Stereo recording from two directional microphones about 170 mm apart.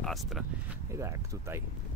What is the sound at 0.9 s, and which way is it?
Speech, 15° right (ahead or behind).